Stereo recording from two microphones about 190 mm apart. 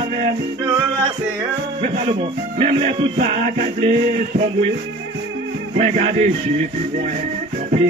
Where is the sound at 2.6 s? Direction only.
30° right (ahead or behind).